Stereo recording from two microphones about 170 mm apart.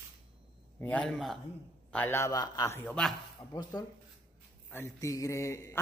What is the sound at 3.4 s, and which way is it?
Speech, 20° left (ahead or behind).